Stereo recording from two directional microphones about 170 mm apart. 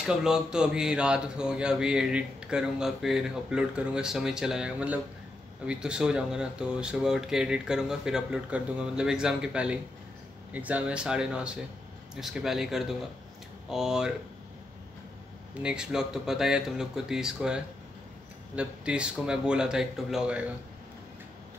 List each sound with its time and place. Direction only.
0.0 s a man's voice: 5° right (ahead or behind)
15.6 s a man's voice: 5° right (ahead or behind)
18.6 s a man's voice: 5° right (ahead or behind)